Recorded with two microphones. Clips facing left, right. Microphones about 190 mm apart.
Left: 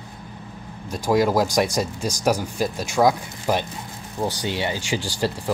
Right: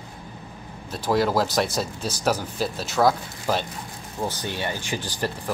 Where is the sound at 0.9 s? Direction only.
15° left (ahead or behind).